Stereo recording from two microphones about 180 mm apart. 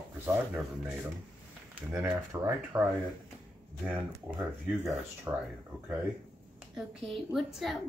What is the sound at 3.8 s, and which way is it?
Speech, 10° right (ahead or behind).